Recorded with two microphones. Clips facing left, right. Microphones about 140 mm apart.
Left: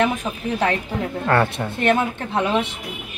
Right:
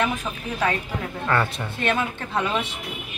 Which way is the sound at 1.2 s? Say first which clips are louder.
Left 4 dB; 30° left (ahead or behind).